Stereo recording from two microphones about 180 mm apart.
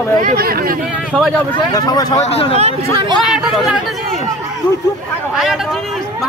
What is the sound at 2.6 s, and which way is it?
Speech, 30° right (ahead or behind).